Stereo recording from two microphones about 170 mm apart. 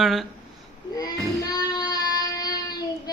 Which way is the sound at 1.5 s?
20° left (ahead or behind).